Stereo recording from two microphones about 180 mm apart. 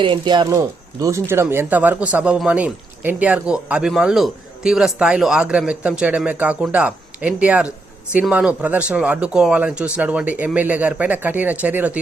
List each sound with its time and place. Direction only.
0.0 s a man's voice: 25° right (ahead or behind); by 11.9 s 10° right (ahead or behind)